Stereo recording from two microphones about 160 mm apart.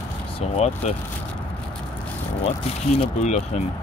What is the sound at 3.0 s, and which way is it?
Speech, 45° left (ahead or behind).